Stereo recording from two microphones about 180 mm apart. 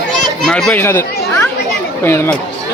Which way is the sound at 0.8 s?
15° left (ahead or behind).